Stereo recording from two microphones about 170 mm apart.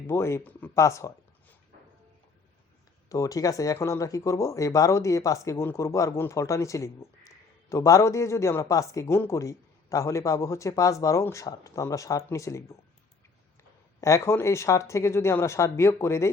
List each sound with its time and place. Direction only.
0.1 s speech: 15° left (ahead or behind)
3.1 s speech: 20° left (ahead or behind)
14.0 s speech: 15° left (ahead or behind)